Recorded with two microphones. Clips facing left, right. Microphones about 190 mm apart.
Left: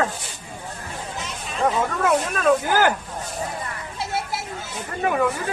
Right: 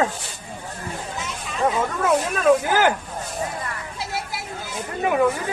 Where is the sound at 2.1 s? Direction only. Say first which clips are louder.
Right 2 dB; 5° right (ahead or behind).